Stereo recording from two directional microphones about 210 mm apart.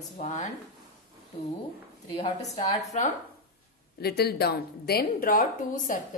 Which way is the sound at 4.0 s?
50° left (ahead or behind).